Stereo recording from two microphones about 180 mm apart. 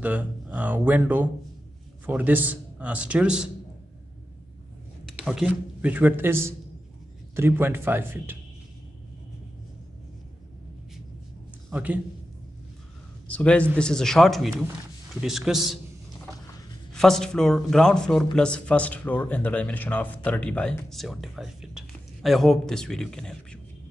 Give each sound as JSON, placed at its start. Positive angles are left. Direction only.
{"t": 0.0, "sound": "a man's voice", "side_deg": -10}
{"t": 5.0, "sound": "a man's voice", "side_deg": 0}
{"t": 11.7, "sound": "a man's voice", "side_deg": -10}
{"t": 13.3, "sound": "speech", "side_deg": 5}
{"t": 16.9, "sound": "speech", "side_deg": 5}